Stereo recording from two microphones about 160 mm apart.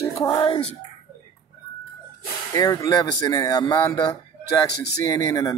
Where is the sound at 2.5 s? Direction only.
20° left (ahead or behind).